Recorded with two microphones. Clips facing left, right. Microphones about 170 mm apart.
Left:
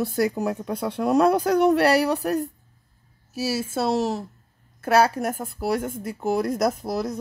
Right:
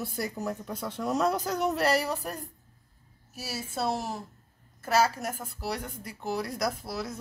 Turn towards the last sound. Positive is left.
turn(degrees=45)  # may be behind; listen again after turning